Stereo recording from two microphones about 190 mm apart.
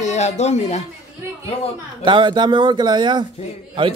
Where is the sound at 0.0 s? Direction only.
35° left (ahead or behind).